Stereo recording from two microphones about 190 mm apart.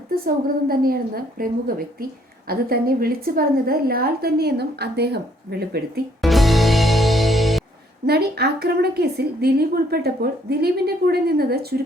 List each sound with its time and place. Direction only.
0.1 s a woman's voice: 50° right (ahead or behind)
6.2 s music: centre (ahead or behind)
8.0 s a woman's voice: 55° right (ahead or behind)